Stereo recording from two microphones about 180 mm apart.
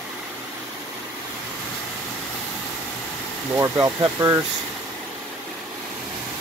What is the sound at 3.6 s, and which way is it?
Speech, 20° right (ahead or behind).